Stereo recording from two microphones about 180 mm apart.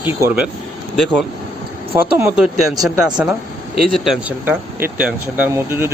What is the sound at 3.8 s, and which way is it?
Speech, centre (ahead or behind).